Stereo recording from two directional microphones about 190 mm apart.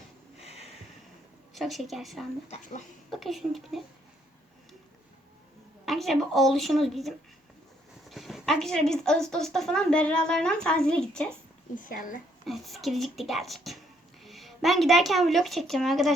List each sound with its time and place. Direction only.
0.3 s a sound: 35° left (ahead or behind)
1.5 s speech: centre (ahead or behind)
5.8 s speech: centre (ahead or behind)
8.1 s speech: centre (ahead or behind)
11.7 s speech: 45° left (ahead or behind)
12.5 s a woman's voice: centre (ahead or behind)